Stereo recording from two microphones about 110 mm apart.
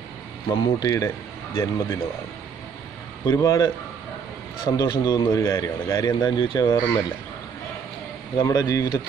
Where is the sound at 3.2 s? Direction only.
30° left (ahead or behind).